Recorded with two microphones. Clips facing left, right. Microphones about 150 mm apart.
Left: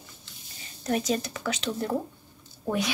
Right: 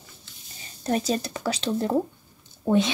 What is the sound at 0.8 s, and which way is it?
Speech, 35° right (ahead or behind).